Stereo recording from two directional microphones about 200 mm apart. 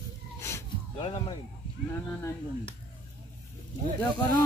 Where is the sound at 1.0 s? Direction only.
30° left (ahead or behind).